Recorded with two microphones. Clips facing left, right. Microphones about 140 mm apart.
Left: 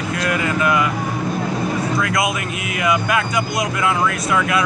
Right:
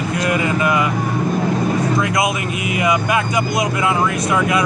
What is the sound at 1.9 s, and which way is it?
Speech, 20° right (ahead or behind).